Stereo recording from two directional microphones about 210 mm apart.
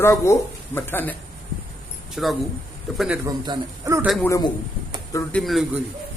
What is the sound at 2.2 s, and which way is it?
Speech, centre (ahead or behind).